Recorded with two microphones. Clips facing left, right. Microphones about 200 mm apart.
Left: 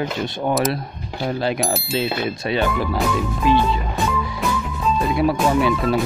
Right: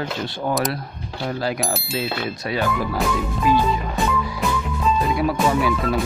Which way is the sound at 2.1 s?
25° left (ahead or behind).